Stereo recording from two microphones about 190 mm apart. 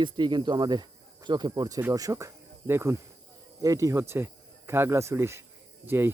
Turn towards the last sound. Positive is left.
turn(degrees=-10)  # may be behind; listen again after turning